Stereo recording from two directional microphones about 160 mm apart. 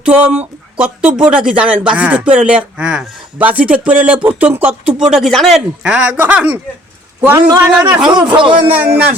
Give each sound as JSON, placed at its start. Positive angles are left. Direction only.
{"t": 0.0, "sound": "a man's voice", "side_deg": -10}
{"t": 8.1, "sound": "a man's voice", "side_deg": -30}
{"t": 8.6, "sound": "speech", "side_deg": -10}